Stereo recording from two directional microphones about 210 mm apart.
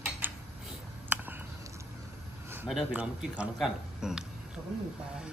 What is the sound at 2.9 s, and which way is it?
Speech, 5° right (ahead or behind).